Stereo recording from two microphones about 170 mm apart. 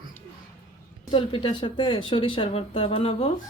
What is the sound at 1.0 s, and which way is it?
A woman's voice, 30° left (ahead or behind).